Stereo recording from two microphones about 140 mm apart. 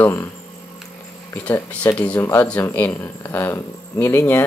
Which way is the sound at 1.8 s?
10° left (ahead or behind).